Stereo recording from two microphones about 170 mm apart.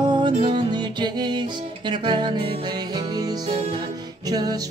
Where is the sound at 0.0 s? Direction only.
25° right (ahead or behind).